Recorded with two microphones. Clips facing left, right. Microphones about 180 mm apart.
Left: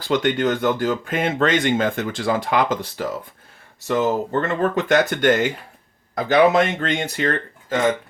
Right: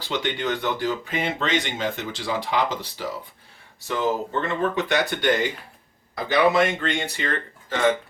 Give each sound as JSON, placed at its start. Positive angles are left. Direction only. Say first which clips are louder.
{"t": 0.0, "sound": "speech", "louder": "left 7 dB", "side_deg": 45}